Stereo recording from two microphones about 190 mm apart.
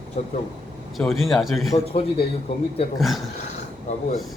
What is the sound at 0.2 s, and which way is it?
Speech, 35° left (ahead or behind).